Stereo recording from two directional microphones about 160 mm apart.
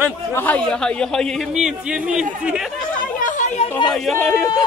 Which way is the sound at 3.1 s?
55° left (ahead or behind).